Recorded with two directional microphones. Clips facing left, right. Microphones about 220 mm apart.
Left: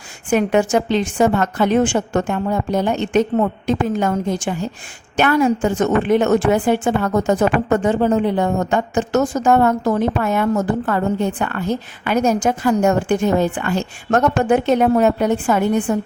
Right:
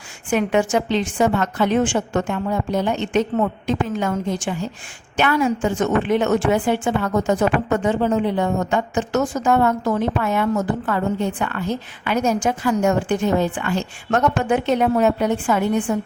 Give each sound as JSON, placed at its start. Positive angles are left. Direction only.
{"t": 0.3, "sound": "a woman's voice", "side_deg": 45}